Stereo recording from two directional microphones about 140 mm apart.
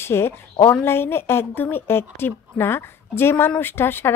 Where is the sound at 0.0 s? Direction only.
15° left (ahead or behind).